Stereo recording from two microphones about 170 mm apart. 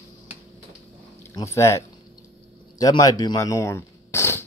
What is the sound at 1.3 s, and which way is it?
Speech, 15° left (ahead or behind).